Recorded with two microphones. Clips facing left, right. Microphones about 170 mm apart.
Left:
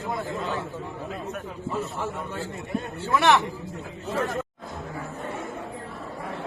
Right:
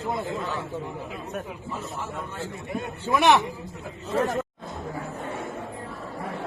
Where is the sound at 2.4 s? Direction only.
15° right (ahead or behind).